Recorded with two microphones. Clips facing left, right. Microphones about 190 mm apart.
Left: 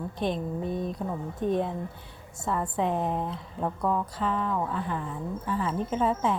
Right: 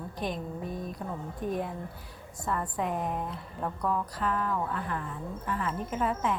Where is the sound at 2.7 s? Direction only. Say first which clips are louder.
Left 4 dB; 30° left (ahead or behind).